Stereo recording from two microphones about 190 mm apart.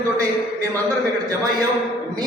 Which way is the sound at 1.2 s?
20° right (ahead or behind).